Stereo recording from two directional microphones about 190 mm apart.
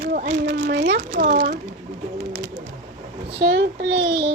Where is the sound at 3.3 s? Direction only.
65° right (ahead or behind).